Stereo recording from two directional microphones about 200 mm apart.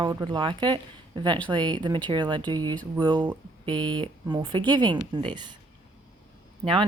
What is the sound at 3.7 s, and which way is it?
Speech, 5° left (ahead or behind).